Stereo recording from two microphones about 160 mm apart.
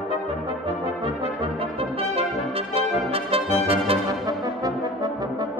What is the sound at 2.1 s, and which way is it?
Brass instrument, 35° right (ahead or behind).